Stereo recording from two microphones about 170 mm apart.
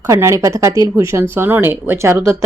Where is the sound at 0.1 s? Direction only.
20° right (ahead or behind).